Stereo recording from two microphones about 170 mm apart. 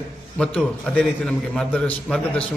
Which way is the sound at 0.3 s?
5° left (ahead or behind).